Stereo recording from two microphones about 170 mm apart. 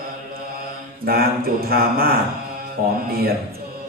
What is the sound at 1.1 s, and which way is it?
Mantra, 60° right (ahead or behind).